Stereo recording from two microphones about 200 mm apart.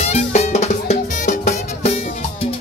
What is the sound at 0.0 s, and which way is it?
Music, 35° left (ahead or behind).